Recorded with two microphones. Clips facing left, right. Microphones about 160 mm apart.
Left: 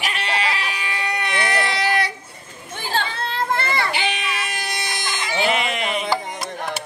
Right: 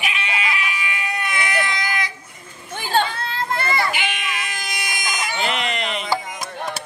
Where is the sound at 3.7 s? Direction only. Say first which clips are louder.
Even; 30° left (ahead or behind).